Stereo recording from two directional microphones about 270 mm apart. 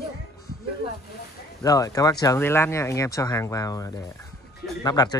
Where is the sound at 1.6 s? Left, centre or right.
Centre.